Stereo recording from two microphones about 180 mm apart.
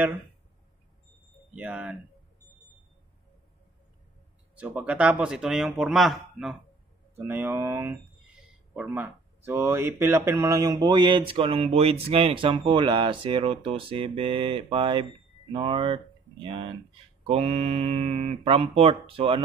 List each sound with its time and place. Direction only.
1.5 s speech: 10° right (ahead or behind)
4.6 s speech: 10° right (ahead or behind); by 19.4 s 30° right (ahead or behind)